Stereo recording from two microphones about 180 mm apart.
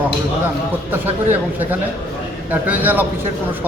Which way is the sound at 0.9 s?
10° right (ahead or behind).